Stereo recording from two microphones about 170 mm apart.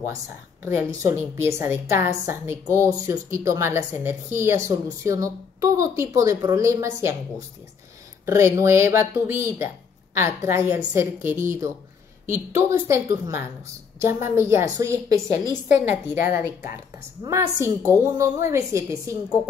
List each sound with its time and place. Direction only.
0.0 s a woman's voice: 15° right (ahead or behind)
8.3 s a woman's voice: 15° right (ahead or behind)